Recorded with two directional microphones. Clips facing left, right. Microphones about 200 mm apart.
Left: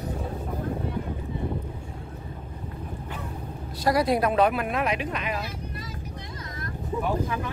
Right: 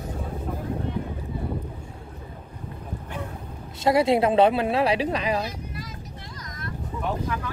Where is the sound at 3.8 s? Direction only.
25° right (ahead or behind).